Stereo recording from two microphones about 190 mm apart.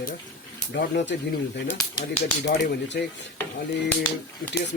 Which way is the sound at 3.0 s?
50° left (ahead or behind).